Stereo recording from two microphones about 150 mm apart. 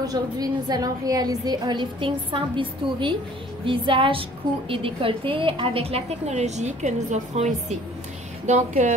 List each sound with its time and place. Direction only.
0.0 s a woman's voice: 25° right (ahead or behind); by 8.9 s 50° right (ahead or behind)